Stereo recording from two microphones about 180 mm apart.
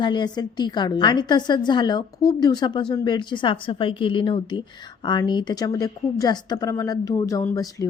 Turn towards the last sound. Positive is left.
turn(degrees=15)  # may be behind; listen again after turning